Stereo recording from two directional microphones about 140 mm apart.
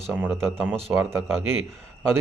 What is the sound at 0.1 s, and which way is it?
A man's voice, 10° right (ahead or behind).